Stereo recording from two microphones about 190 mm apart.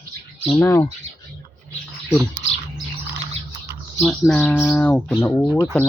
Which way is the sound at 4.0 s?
5° left (ahead or behind).